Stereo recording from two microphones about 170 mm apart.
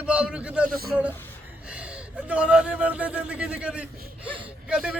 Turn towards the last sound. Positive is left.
turn(degrees=-5)  # may be behind; listen again after turning